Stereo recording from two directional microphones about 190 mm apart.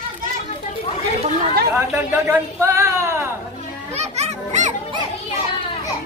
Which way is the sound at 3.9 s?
35° right (ahead or behind).